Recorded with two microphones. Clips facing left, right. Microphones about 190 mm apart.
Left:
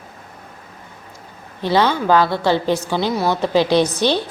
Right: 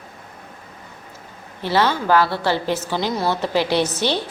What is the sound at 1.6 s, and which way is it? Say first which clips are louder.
A woman's voice: left 3 dB; 15° left (ahead or behind).